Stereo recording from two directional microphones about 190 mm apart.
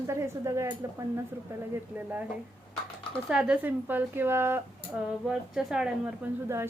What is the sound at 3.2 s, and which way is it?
Speech, 5° right (ahead or behind).